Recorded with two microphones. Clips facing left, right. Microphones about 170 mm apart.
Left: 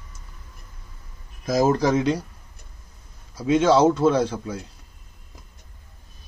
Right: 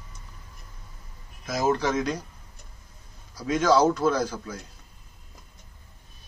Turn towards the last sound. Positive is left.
turn(degrees=30)  # may be behind; listen again after turning